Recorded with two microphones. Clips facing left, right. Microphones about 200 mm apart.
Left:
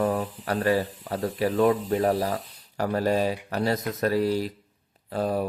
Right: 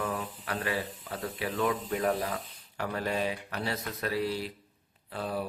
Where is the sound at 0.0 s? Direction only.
40° left (ahead or behind).